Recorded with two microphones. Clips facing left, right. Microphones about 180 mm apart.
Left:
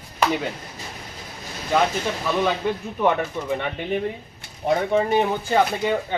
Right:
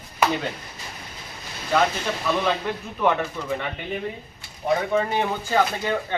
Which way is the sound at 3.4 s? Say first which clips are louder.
Left 3 dB; 20° left (ahead or behind).